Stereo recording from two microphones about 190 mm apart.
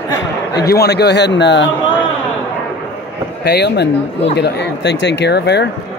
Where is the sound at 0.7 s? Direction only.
60° left (ahead or behind).